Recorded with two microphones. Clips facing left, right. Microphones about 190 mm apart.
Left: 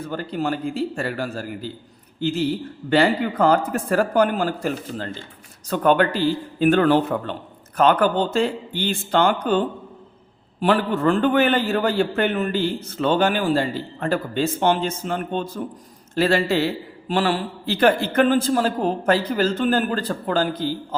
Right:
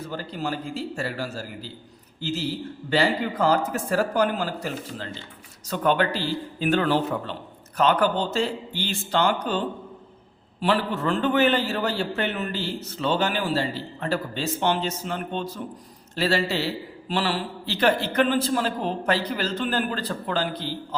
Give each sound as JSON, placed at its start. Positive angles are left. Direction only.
{"t": 0.1, "sound": "a man's voice", "side_deg": 55}
{"t": 2.9, "sound": "a man's voice", "side_deg": 55}